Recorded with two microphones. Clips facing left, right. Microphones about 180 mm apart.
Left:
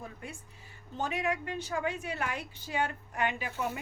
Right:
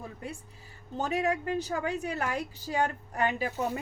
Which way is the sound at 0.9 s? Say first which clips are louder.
Right 4 dB; 40° right (ahead or behind).